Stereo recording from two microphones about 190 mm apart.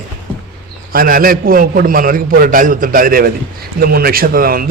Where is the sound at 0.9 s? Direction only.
50° right (ahead or behind).